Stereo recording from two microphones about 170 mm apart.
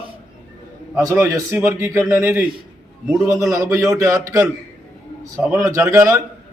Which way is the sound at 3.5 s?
20° right (ahead or behind).